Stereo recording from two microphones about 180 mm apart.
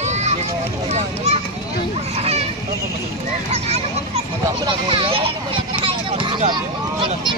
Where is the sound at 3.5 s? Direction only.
35° right (ahead or behind).